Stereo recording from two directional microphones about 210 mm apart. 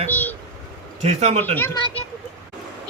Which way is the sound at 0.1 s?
10° left (ahead or behind).